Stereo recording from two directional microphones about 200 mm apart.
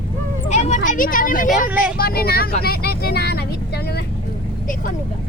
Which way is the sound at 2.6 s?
50° left (ahead or behind).